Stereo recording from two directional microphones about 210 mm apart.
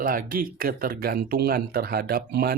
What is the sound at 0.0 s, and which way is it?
Speech, 45° right (ahead or behind).